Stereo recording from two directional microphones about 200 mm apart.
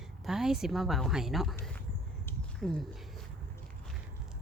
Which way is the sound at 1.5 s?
10° left (ahead or behind).